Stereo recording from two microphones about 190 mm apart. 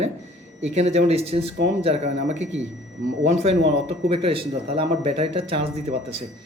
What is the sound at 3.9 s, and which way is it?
Speech, 30° right (ahead or behind).